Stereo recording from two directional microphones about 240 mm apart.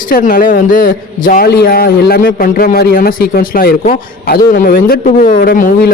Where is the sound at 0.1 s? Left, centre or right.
Left.